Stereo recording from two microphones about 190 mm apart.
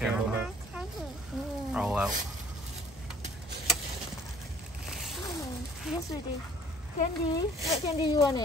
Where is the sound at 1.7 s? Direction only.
5° right (ahead or behind).